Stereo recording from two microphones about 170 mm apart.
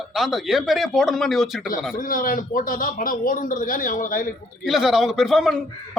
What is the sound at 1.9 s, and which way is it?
A man's voice, 55° left (ahead or behind).